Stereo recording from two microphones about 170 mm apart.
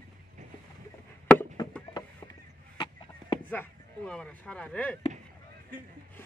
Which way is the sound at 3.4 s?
10° left (ahead or behind).